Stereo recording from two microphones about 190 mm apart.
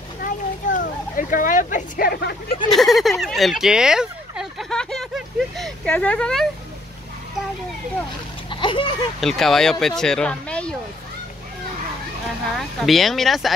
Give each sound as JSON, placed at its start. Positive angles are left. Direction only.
{"t": 0.2, "sound": "a sound", "side_deg": 45}
{"t": 2.7, "sound": "speech", "side_deg": 0}
{"t": 8.5, "sound": "splash", "side_deg": 25}
{"t": 9.2, "sound": "speech", "side_deg": 0}
{"t": 12.5, "sound": "speech", "side_deg": 0}